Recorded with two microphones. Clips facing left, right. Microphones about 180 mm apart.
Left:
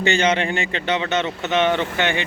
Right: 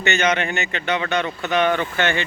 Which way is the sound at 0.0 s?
30° left (ahead or behind).